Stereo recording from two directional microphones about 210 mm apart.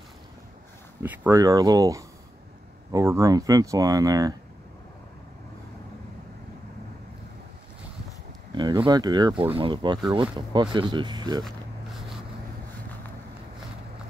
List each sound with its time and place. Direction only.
1.0 s speech: 10° right (ahead or behind)
8.5 s speech: 20° right (ahead or behind)
11.4 s a sound: centre (ahead or behind)